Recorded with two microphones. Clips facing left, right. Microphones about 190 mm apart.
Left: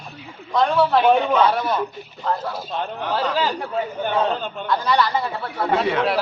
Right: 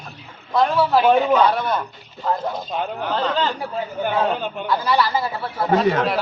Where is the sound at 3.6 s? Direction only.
5° right (ahead or behind).